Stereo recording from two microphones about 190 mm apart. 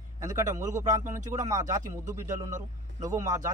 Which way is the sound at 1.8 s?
40° right (ahead or behind).